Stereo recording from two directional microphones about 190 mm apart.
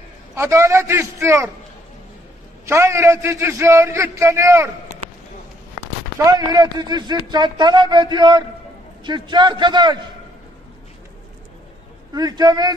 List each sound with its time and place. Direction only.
0.4 s a man's voice: 15° right (ahead or behind)
2.6 s a man's voice: 15° right (ahead or behind)
6.1 s speech: 20° right (ahead or behind)
12.1 s speech: 20° right (ahead or behind)